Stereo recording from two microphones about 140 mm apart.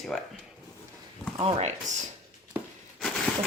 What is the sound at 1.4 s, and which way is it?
Speech, 45° right (ahead or behind).